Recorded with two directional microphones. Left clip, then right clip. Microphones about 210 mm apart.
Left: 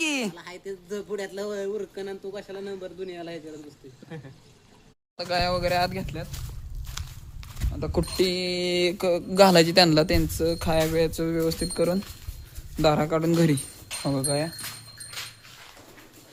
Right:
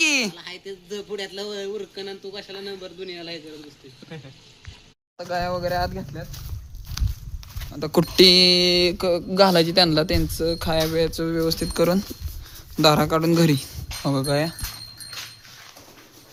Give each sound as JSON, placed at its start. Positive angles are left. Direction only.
{"t": 0.0, "sound": "a sound", "side_deg": 0}
{"t": 0.3, "sound": "speech", "side_deg": 10}
{"t": 5.1, "sound": "a man's voice", "side_deg": -5}
{"t": 7.0, "sound": "walk", "side_deg": -5}
{"t": 7.9, "sound": "a sound", "side_deg": -30}
{"t": 8.8, "sound": "a man's voice", "side_deg": -5}